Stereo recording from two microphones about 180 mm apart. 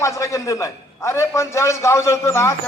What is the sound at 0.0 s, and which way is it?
A man's voice, 15° left (ahead or behind).